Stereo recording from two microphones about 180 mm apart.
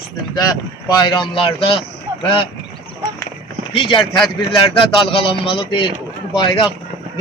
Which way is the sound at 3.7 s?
30° left (ahead or behind).